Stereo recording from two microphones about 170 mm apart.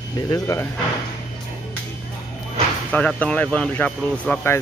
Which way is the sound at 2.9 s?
10° left (ahead or behind).